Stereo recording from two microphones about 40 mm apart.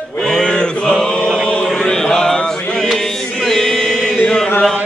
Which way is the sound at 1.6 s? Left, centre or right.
Centre.